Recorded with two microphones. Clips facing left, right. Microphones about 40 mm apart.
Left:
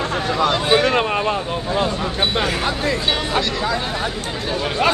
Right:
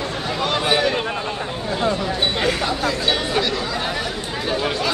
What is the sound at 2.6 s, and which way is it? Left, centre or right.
Speech, left.